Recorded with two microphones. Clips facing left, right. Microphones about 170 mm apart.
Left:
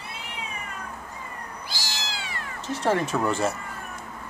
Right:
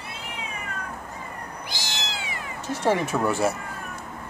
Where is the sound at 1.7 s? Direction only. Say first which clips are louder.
Right 1 dB; 20° right (ahead or behind).